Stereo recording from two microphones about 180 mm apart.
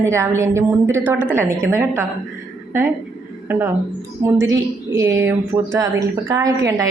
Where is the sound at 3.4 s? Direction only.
10° right (ahead or behind).